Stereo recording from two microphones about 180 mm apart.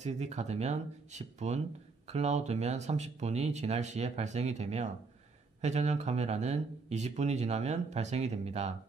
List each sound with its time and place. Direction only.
0.0 s speech: 40° right (ahead or behind)